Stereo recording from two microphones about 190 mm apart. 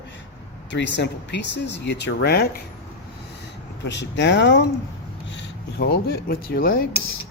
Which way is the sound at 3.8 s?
70° left (ahead or behind).